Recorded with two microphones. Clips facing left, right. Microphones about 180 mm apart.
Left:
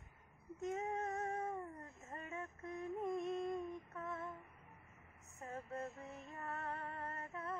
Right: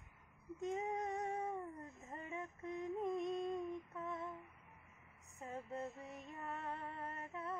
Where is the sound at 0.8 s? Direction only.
15° right (ahead or behind).